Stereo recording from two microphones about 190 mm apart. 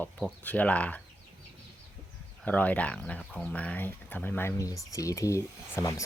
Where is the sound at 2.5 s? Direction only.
10° left (ahead or behind).